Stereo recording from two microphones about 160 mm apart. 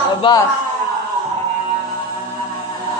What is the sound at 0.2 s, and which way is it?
Speech, 30° left (ahead or behind).